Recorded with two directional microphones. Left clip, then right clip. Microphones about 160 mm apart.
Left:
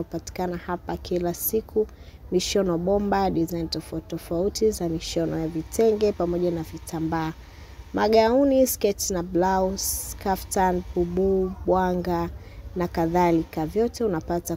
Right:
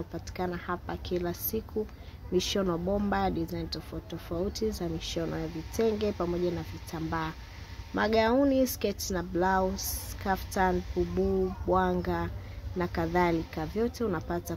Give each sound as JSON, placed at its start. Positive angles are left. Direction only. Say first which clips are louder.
{"t": 0.1, "sound": "speech", "louder": "left 5 dB", "side_deg": 40}